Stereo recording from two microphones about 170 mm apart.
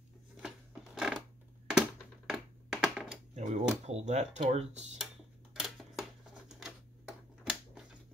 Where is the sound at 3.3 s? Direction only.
45° right (ahead or behind).